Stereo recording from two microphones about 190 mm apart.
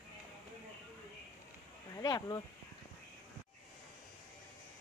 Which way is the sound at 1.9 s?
20° left (ahead or behind).